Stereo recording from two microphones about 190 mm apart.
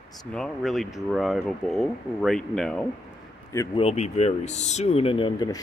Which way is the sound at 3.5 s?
15° left (ahead or behind).